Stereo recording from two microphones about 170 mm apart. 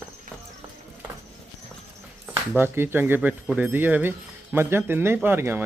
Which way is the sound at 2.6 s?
15° right (ahead or behind).